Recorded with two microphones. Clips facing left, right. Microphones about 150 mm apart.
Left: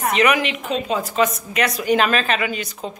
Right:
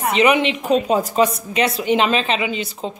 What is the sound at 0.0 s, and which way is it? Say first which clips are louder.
A woman's voice: right 2 dB; 30° right (ahead or behind).